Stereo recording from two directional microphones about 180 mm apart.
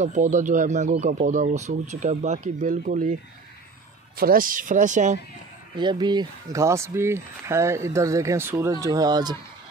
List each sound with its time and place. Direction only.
0.0 s speech: 40° right (ahead or behind)
4.2 s speech: 50° right (ahead or behind)
5.8 s speech: 25° right (ahead or behind)